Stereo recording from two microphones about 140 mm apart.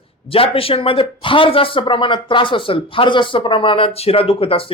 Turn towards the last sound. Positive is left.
turn(degrees=40)  # may be behind; listen again after turning